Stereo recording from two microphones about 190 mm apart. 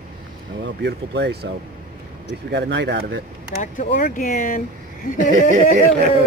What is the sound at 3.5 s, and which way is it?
Speech, 45° left (ahead or behind).